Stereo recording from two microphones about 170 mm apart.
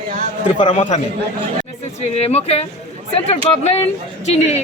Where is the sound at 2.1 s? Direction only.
40° left (ahead or behind).